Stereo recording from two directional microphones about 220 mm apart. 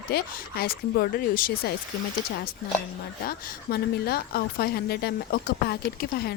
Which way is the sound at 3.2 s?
45° left (ahead or behind).